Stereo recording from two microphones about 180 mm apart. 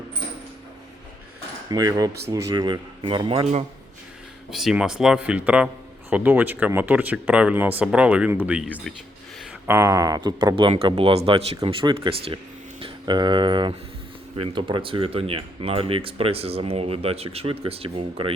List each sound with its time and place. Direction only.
1.7 s speech: 20° right (ahead or behind)
4.5 s speech: 5° right (ahead or behind); by 18.3 s 30° right (ahead or behind)